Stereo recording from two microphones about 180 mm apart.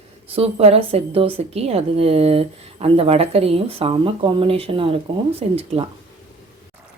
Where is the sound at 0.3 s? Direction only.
30° right (ahead or behind).